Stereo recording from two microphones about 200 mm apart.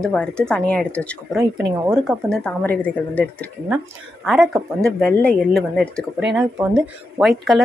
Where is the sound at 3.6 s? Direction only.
5° right (ahead or behind).